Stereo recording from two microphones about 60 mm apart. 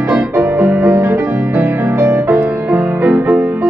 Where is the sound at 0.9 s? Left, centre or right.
Right.